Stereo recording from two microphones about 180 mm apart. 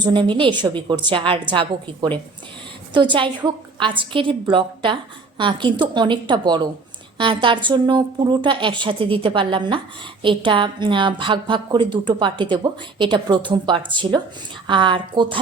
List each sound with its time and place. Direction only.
0.0 s a woman's voice: 25° right (ahead or behind)